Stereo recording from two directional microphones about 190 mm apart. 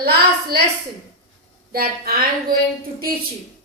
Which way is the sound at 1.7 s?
50° right (ahead or behind).